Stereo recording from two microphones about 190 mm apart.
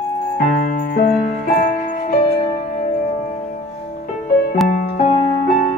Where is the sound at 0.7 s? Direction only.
50° left (ahead or behind).